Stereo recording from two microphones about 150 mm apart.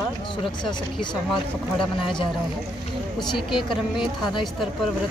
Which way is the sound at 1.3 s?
35° left (ahead or behind).